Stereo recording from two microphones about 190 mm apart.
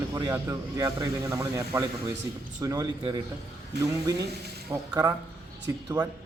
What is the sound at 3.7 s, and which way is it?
Speech, 60° right (ahead or behind).